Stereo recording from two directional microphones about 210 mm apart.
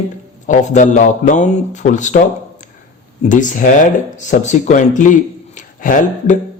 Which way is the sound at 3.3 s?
40° left (ahead or behind).